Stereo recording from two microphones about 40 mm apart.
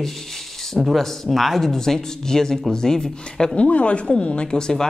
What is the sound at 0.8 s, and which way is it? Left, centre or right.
Speech, centre.